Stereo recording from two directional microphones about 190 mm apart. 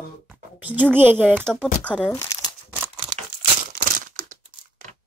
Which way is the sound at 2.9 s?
35° right (ahead or behind).